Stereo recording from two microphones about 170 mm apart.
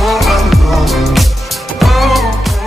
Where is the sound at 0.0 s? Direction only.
Centre (ahead or behind).